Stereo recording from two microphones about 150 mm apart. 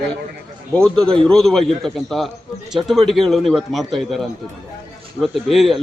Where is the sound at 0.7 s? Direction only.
5° left (ahead or behind).